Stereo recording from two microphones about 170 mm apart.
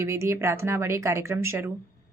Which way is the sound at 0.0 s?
15° right (ahead or behind).